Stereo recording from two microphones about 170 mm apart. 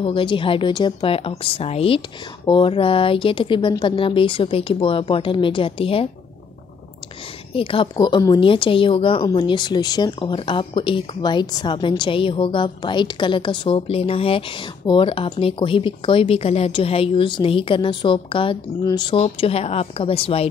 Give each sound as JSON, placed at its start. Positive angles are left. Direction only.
{"t": 0.0, "sound": "speech", "side_deg": 30}
{"t": 7.5, "sound": "speech", "side_deg": 30}